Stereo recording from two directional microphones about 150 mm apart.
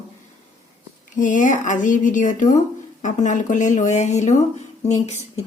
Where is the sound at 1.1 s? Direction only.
60° left (ahead or behind).